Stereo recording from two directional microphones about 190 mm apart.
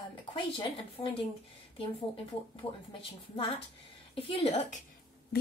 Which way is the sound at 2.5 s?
25° left (ahead or behind).